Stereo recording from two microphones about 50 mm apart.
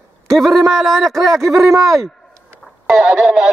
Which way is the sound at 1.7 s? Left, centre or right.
Right.